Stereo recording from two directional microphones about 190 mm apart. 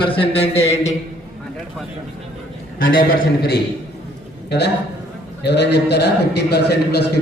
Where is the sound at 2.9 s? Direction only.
55° left (ahead or behind).